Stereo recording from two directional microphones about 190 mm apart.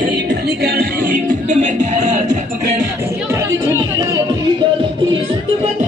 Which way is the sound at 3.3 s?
15° right (ahead or behind).